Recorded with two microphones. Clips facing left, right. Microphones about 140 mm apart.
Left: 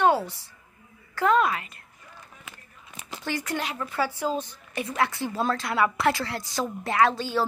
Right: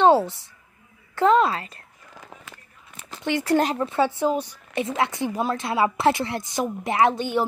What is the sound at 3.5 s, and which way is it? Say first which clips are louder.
Speech: right 10 dB; 35° right (ahead or behind).